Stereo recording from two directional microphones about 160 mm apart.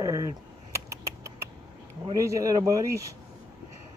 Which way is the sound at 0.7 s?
20° right (ahead or behind).